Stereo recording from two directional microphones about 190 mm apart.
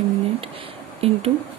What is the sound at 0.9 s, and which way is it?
Speech, 30° right (ahead or behind).